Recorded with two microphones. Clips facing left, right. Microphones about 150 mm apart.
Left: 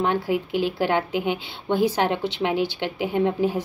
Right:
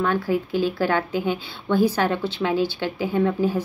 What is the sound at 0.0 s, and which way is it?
A woman's voice, 20° left (ahead or behind).